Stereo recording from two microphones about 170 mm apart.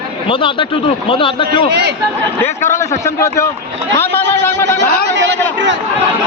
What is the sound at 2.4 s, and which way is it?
A man's voice, 15° left (ahead or behind).